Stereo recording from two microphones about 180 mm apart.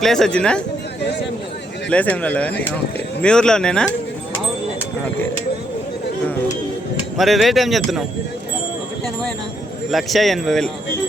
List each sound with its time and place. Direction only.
0.0 s speech: centre (ahead or behind)
1.9 s a man's voice: 10° left (ahead or behind)
7.2 s speech: centre (ahead or behind)
9.9 s speech: centre (ahead or behind)